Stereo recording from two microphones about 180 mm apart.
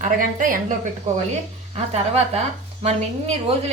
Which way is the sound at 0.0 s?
50° right (ahead or behind).